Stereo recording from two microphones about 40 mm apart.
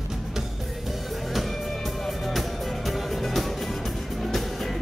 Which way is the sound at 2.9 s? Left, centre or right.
Centre.